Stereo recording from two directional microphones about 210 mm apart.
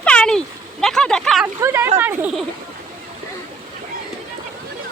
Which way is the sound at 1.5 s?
10° right (ahead or behind).